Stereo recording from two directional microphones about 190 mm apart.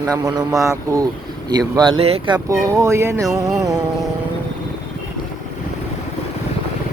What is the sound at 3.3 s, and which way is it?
Music, 5° right (ahead or behind).